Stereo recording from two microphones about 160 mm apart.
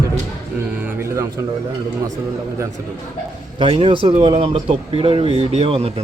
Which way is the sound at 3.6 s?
35° right (ahead or behind).